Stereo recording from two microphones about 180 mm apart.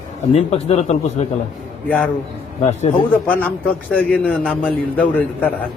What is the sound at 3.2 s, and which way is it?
A man's voice, 10° left (ahead or behind).